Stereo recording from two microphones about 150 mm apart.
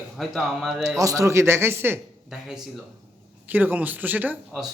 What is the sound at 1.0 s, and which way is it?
Speech, 20° right (ahead or behind).